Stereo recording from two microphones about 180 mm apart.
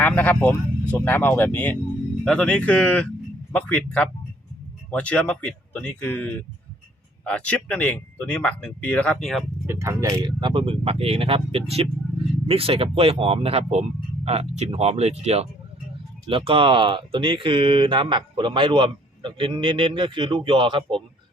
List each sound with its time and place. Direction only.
0.0 s speech: 10° left (ahead or behind)
9.6 s speech: 15° right (ahead or behind)